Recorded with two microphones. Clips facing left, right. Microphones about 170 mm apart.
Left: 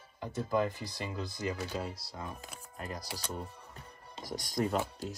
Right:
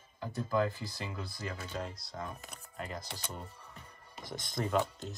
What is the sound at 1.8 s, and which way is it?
Speech, 5° left (ahead or behind).